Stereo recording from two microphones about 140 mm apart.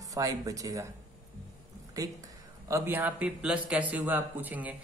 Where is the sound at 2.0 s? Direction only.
25° right (ahead or behind).